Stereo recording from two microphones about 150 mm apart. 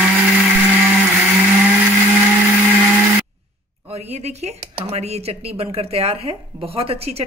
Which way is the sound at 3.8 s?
45° right (ahead or behind).